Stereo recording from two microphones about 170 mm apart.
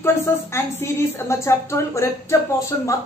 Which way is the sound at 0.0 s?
15° left (ahead or behind).